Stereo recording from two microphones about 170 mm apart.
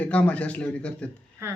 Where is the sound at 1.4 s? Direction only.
15° right (ahead or behind).